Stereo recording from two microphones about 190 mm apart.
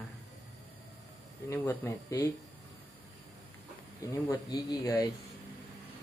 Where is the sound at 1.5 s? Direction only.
15° left (ahead or behind).